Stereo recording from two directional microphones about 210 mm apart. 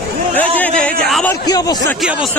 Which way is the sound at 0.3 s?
5° left (ahead or behind).